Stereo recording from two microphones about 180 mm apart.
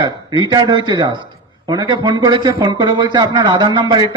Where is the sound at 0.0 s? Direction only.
25° right (ahead or behind).